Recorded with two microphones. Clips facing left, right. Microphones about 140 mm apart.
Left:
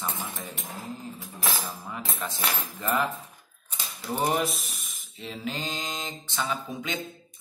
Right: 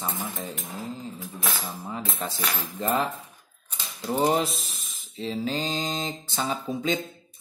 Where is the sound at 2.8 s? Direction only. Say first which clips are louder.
Right 2 dB; 35° right (ahead or behind).